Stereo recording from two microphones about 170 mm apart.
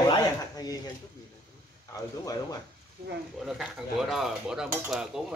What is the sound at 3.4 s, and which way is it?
Speech, centre (ahead or behind).